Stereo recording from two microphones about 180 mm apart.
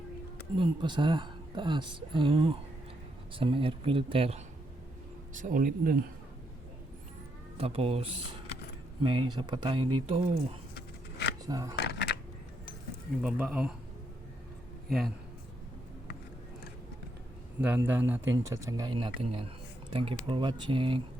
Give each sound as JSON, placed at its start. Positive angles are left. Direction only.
{"t": 0.5, "sound": "a woman's voice", "side_deg": -25}
{"t": 5.3, "sound": "speech", "side_deg": -45}
{"t": 7.6, "sound": "a woman's voice", "side_deg": -30}
{"t": 10.8, "sound": "a sound", "side_deg": 65}
{"t": 11.4, "sound": "a woman's voice", "side_deg": -20}
{"t": 11.8, "sound": "a sound", "side_deg": 70}
{"t": 13.2, "sound": "speech", "side_deg": -5}
{"t": 17.6, "sound": "a woman's voice", "side_deg": -10}